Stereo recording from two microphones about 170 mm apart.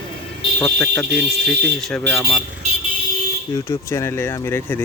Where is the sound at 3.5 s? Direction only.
15° left (ahead or behind).